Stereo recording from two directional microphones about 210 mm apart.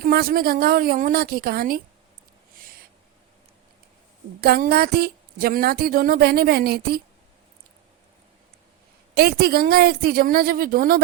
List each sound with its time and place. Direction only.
0.0 s speech: 45° right (ahead or behind)
2.6 s owl: 45° right (ahead or behind)
4.4 s speech: 50° right (ahead or behind)
9.1 s speech: 45° right (ahead or behind)